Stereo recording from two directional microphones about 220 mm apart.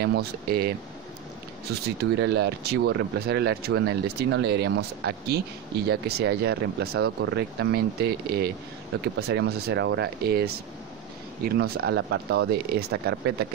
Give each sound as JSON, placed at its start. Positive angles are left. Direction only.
{"t": 0.0, "sound": "speech", "side_deg": -45}